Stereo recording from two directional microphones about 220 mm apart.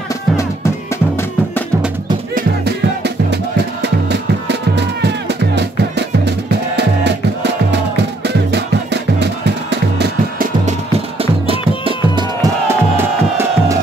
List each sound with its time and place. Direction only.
2.3 s music: 50° right (ahead or behind)
11.1 s music: 25° right (ahead or behind)
12.9 s music: 10° right (ahead or behind)